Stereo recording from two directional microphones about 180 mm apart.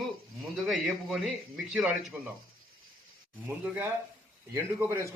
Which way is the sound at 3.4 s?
10° right (ahead or behind).